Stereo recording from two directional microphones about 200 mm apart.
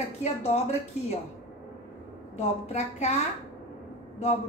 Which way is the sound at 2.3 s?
35° left (ahead or behind).